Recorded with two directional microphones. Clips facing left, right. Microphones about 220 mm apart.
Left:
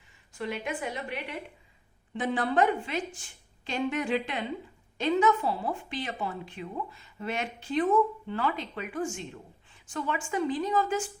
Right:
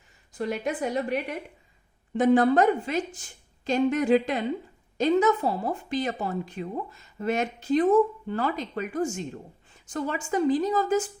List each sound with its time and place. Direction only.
0.3 s a woman's voice: 40° right (ahead or behind)